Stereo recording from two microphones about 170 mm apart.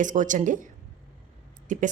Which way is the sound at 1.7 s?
50° right (ahead or behind).